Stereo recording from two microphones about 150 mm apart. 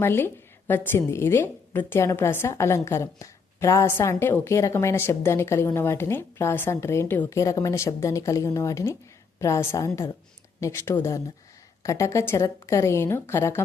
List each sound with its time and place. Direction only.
0.0 s a woman's voice: 15° left (ahead or behind)